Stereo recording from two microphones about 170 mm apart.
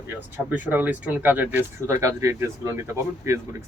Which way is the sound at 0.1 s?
10° right (ahead or behind).